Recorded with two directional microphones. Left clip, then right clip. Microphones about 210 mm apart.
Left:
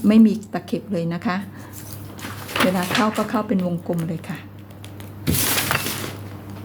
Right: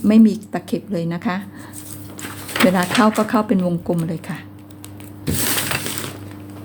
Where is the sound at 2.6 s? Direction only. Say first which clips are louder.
Right 4 dB; 25° right (ahead or behind).